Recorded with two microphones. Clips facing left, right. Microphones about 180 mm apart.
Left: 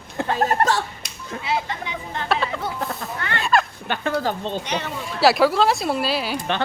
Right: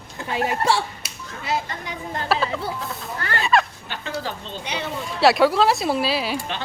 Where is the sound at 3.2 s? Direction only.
40° right (ahead or behind).